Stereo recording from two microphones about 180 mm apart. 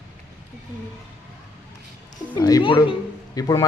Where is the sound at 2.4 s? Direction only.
20° left (ahead or behind).